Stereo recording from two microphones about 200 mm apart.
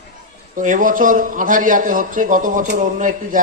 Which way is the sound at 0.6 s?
40° right (ahead or behind).